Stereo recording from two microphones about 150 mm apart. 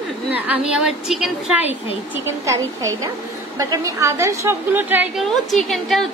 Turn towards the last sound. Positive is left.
turn(degrees=0)  # may be behind; listen again after turning